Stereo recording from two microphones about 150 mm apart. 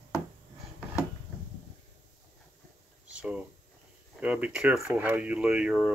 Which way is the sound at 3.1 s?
10° right (ahead or behind).